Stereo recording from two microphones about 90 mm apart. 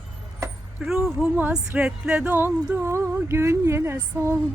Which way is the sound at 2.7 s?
30° right (ahead or behind).